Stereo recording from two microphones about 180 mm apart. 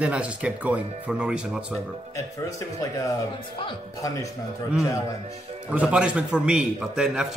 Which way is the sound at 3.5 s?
20° left (ahead or behind).